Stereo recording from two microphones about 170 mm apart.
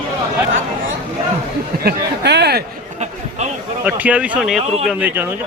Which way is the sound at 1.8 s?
85° right.